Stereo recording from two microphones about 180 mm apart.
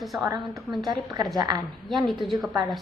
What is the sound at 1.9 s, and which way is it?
Speech, centre (ahead or behind).